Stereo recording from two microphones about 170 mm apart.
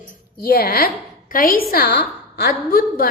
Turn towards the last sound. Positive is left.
turn(degrees=60)  # may be behind; listen again after turning